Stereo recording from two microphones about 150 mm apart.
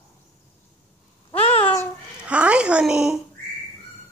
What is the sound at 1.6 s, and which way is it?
Babbling, 15° left (ahead or behind).